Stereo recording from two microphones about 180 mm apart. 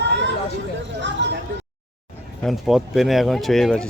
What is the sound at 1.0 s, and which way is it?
Vehicle, 75° right (ahead or behind).